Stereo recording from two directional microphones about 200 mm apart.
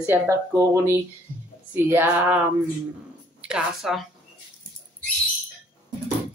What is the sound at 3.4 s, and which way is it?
Speech, 5° right (ahead or behind).